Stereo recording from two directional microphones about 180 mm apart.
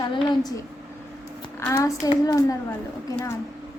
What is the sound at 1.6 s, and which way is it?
Speech, 20° left (ahead or behind).